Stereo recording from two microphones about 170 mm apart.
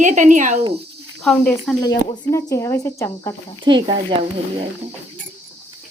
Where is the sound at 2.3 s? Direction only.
15° left (ahead or behind).